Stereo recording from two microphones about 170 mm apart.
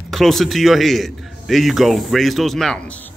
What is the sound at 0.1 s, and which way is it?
A man's voice, centre (ahead or behind).